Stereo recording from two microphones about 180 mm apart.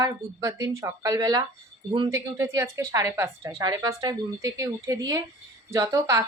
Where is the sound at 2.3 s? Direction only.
15° right (ahead or behind).